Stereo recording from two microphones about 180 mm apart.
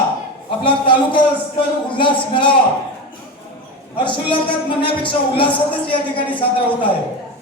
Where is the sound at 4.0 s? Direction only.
30° left (ahead or behind).